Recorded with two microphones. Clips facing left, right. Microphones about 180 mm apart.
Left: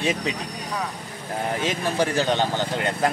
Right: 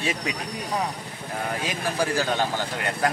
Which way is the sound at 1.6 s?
25° left (ahead or behind).